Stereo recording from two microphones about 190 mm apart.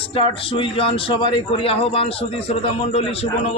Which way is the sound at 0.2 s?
25° left (ahead or behind).